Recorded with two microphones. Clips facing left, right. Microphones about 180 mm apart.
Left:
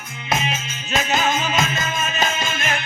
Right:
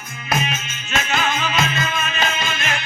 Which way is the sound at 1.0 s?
40° left (ahead or behind).